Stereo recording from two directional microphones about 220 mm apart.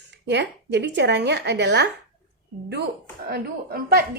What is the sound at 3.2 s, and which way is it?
Speech, 45° right (ahead or behind).